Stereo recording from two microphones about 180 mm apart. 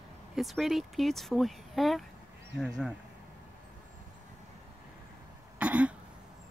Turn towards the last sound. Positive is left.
turn(degrees=-5)  # may be behind; listen again after turning